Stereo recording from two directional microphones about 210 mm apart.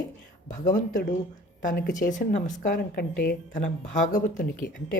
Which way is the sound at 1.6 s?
40° left (ahead or behind).